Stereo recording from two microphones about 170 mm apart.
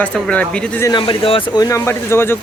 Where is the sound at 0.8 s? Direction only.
25° left (ahead or behind).